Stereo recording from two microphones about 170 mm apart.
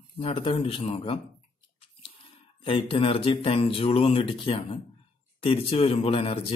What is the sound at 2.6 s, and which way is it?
A man's voice, 30° left (ahead or behind).